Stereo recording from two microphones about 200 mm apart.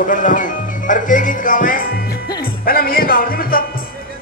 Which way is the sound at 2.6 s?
45° left (ahead or behind).